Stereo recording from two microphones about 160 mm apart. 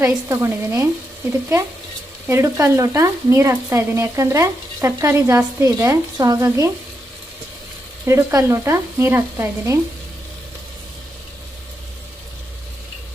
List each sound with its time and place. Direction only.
0.0 s speech: 15° right (ahead or behind)
2.2 s frying: 15° right (ahead or behind)
8.0 s speech: 20° right (ahead or behind)